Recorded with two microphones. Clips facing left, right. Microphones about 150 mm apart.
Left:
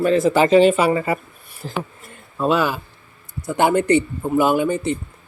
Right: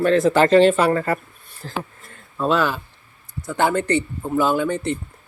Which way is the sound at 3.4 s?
15° left (ahead or behind).